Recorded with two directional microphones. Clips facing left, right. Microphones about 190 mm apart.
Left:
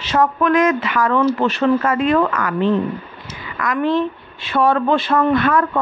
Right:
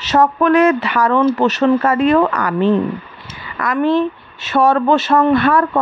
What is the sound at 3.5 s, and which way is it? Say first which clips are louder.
A woman's voice: right 3 dB; 35° right (ahead or behind).